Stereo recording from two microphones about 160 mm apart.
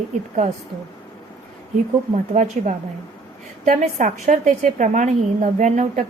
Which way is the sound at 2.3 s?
50° right (ahead or behind).